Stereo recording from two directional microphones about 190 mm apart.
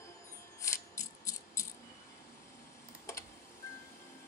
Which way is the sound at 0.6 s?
15° left (ahead or behind).